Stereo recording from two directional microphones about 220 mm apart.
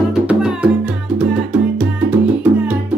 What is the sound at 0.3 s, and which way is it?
Music, 5° right (ahead or behind).